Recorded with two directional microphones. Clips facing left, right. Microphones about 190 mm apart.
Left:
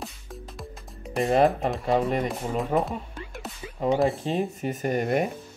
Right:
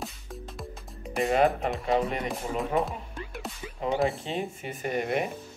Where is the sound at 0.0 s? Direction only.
Centre (ahead or behind).